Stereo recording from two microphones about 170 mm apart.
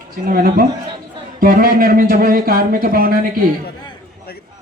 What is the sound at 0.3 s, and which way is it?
Speech, 60° right (ahead or behind).